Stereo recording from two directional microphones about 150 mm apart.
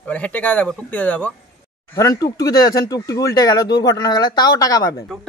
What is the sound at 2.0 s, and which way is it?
Speech, 25° left (ahead or behind).